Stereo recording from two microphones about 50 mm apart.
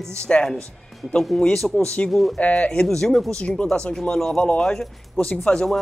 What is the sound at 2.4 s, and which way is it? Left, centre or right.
Speech, left.